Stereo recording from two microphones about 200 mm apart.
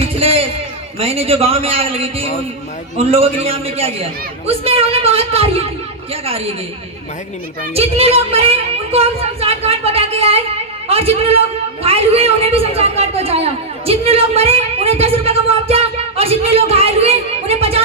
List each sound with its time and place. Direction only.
0.2 s a sound: 30° right (ahead or behind)
0.9 s a woman's voice: 30° right (ahead or behind)
7.7 s a woman's voice: 30° right (ahead or behind)